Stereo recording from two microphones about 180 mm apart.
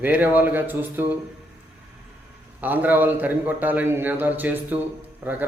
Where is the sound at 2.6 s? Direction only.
10° right (ahead or behind).